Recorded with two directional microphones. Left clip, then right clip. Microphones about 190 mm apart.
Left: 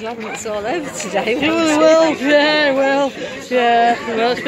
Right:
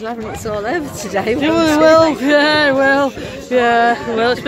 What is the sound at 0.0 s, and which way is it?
Speech, 50° right (ahead or behind).